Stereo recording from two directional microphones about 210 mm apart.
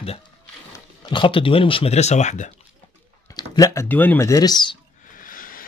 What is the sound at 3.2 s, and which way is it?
Speech, 15° left (ahead or behind).